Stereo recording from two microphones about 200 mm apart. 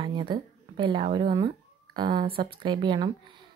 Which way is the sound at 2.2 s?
50° right (ahead or behind).